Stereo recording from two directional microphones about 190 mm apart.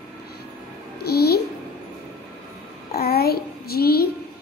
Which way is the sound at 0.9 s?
55° left (ahead or behind).